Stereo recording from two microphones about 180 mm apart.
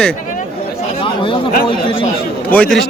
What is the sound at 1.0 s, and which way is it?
Chatter, 30° left (ahead or behind).